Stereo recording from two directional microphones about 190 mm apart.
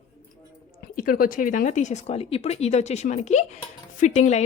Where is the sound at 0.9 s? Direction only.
50° left (ahead or behind).